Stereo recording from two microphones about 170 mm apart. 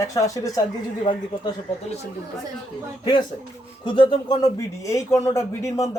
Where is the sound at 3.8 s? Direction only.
30° left (ahead or behind).